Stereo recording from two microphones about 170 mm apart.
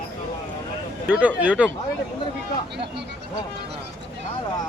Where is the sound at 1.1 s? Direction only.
10° right (ahead or behind).